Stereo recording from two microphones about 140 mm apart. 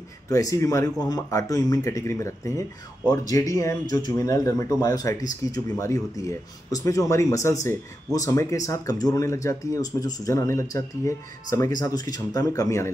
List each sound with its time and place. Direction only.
0.3 s speech: 25° left (ahead or behind)